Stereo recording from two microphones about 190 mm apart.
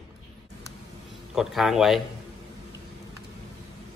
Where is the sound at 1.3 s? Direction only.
Centre (ahead or behind).